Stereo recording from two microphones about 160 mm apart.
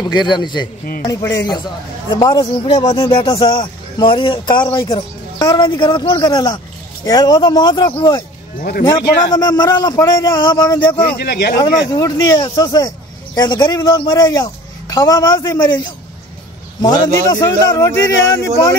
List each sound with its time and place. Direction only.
0.0 s speech: 25° left (ahead or behind)
9.3 s speech: 25° left (ahead or behind)
11.0 s speech: 85° left
11.5 s speech: 25° left (ahead or behind)
16.8 s speech: 25° left (ahead or behind)